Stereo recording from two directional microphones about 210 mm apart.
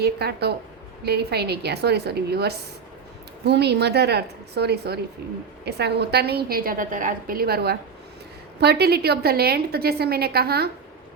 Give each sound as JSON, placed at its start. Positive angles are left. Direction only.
{"t": 0.0, "sound": "a woman's voice", "side_deg": -50}